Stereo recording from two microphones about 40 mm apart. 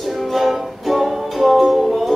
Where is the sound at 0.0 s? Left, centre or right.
Centre.